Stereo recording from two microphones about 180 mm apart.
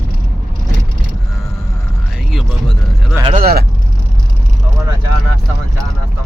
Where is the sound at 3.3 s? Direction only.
55° right (ahead or behind).